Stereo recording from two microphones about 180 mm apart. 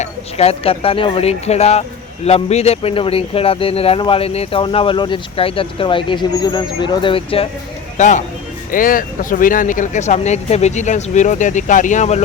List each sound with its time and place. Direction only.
0.0 s speech: 35° left (ahead or behind)
7.9 s speech: 40° left (ahead or behind)